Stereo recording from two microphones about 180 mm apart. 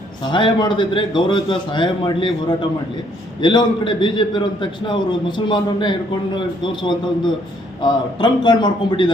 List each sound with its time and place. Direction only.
0.3 s a man's voice: 25° left (ahead or behind)